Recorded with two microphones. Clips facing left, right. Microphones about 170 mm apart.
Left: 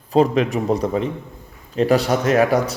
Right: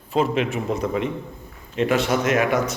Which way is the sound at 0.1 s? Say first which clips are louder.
Left 5 dB; 35° left (ahead or behind).